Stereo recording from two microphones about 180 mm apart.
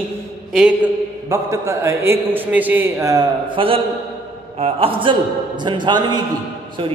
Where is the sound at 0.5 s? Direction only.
5° right (ahead or behind).